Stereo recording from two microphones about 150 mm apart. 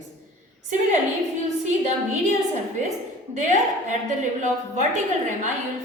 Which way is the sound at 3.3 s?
55° right (ahead or behind).